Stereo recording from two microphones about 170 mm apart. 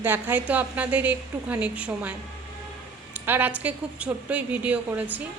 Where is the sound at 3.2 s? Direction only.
10° right (ahead or behind).